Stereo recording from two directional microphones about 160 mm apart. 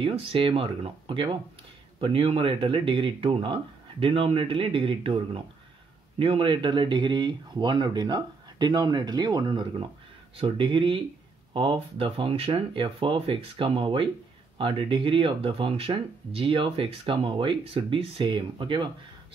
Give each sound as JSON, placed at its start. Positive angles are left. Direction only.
{"t": 0.0, "sound": "speech", "side_deg": -35}